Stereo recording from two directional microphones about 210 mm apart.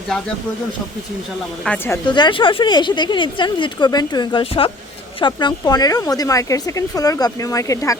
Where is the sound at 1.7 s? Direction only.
10° left (ahead or behind).